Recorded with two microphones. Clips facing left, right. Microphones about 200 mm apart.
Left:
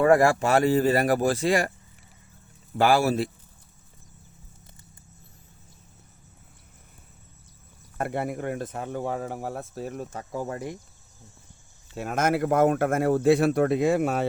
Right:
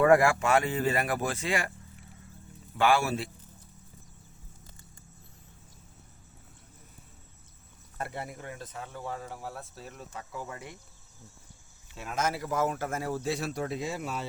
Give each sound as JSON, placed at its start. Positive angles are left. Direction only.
{"t": 0.0, "sound": "speech", "side_deg": 35}
{"t": 2.7, "sound": "speech", "side_deg": 40}
{"t": 7.9, "sound": "speech", "side_deg": 55}
{"t": 11.9, "sound": "a man's voice", "side_deg": 55}